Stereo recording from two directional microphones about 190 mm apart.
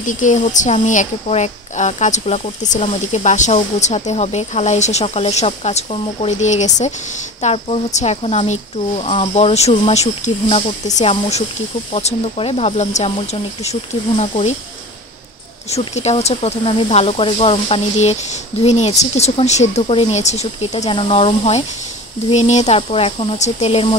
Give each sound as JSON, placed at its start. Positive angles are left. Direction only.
{"t": 0.0, "sound": "a woman's voice", "side_deg": 40}
{"t": 15.7, "sound": "a woman's voice", "side_deg": 35}